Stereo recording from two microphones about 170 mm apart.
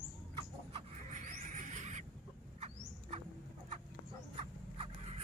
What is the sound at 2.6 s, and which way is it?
Rodents, 40° right (ahead or behind).